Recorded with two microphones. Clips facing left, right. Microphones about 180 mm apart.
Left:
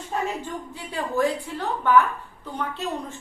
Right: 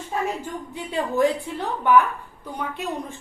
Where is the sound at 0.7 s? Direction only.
20° right (ahead or behind).